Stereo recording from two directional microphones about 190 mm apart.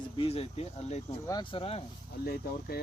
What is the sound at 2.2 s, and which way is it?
Speech, 55° left (ahead or behind).